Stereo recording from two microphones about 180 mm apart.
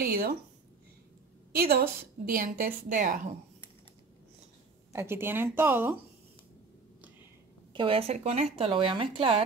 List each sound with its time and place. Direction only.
0.0 s a sound: 55° right (ahead or behind)
1.5 s a woman's voice: 60° right (ahead or behind)
4.9 s a woman's voice: 15° right (ahead or behind)
7.7 s a woman's voice: 30° right (ahead or behind)